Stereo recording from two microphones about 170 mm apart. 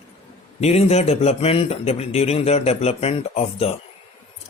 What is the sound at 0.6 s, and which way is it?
A man's voice, 40° left (ahead or behind).